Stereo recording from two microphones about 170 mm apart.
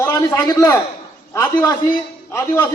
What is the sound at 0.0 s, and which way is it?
A man's voice, 15° left (ahead or behind).